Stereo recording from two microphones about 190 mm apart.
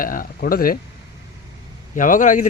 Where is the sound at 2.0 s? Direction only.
45° left (ahead or behind).